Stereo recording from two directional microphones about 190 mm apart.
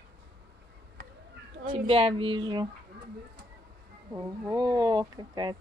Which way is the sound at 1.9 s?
30° right (ahead or behind).